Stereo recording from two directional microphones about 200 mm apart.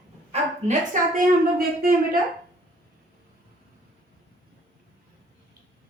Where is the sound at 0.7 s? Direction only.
45° right (ahead or behind).